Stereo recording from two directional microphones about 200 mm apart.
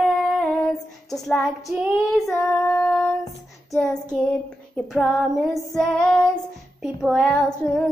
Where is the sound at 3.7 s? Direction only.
5° left (ahead or behind).